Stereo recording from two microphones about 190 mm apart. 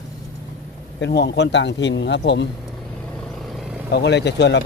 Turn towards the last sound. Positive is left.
turn(degrees=65)  # may be behind; listen again after turning